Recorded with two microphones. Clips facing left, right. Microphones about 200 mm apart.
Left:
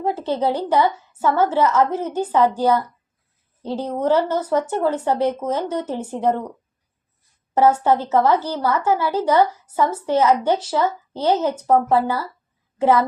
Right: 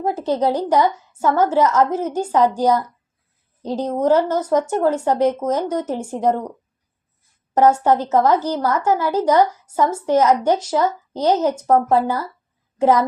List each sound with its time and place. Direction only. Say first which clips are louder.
0.2 s a woman's voice: right 2 dB; 15° right (ahead or behind)
7.7 s a woman's voice: right 1 dB; 15° right (ahead or behind)